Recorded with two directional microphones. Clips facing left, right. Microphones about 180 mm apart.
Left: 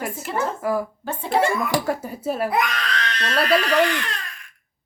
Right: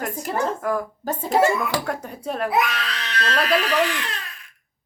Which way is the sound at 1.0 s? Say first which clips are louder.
Right 3 dB; 40° right (ahead or behind).